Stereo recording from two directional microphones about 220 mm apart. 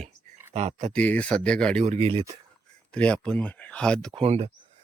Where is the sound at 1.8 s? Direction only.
30° right (ahead or behind).